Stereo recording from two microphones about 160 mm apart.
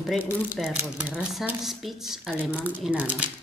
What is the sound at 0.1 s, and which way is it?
Speech, 5° right (ahead or behind).